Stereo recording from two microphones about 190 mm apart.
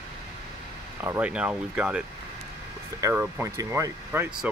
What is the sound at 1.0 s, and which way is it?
Speech, 10° right (ahead or behind).